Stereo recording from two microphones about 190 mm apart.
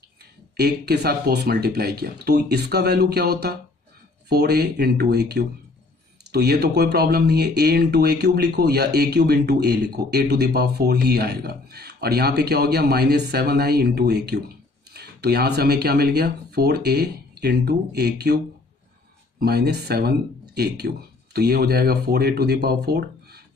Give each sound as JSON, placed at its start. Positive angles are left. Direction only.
{"t": 0.6, "sound": "speech", "side_deg": -60}
{"t": 19.4, "sound": "speech", "side_deg": -55}